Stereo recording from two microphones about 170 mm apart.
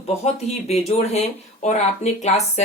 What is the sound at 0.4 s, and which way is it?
Speech, 40° left (ahead or behind).